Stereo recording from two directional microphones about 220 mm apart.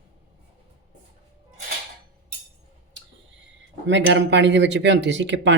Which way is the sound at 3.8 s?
55° right (ahead or behind).